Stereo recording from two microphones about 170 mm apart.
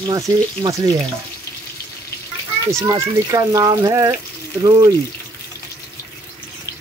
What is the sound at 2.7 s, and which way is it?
Speech, 15° right (ahead or behind).